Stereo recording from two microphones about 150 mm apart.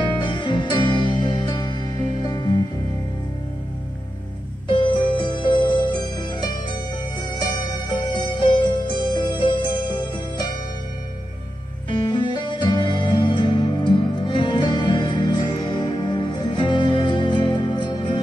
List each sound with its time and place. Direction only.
0.0 s music: 30° left (ahead or behind)
4.6 s music: 30° left (ahead or behind)
12.0 s music: 30° left (ahead or behind)